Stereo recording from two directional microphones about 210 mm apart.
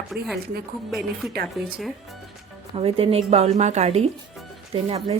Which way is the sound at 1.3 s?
50° right (ahead or behind).